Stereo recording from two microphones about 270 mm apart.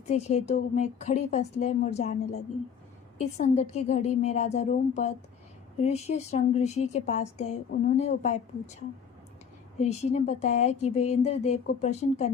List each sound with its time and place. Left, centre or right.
0.1 s a woman's voice: left
3.2 s a woman's voice: left